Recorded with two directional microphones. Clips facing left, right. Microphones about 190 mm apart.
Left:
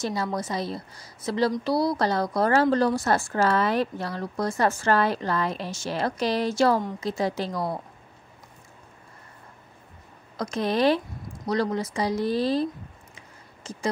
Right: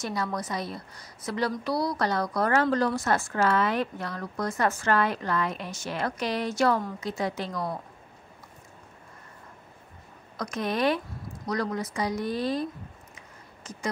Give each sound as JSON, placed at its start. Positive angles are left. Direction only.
{"t": 0.0, "sound": "a woman's voice", "side_deg": 30}
{"t": 10.3, "sound": "speech", "side_deg": 30}
{"t": 13.7, "sound": "beatboxing", "side_deg": 30}